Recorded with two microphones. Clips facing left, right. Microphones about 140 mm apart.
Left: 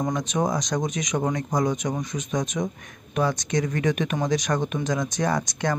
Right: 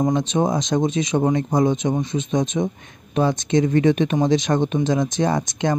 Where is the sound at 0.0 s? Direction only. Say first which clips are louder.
Right 5 dB; 25° right (ahead or behind).